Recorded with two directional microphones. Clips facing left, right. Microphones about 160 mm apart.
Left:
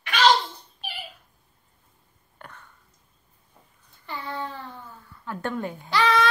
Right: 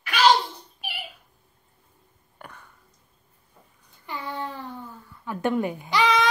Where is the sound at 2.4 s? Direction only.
5° right (ahead or behind).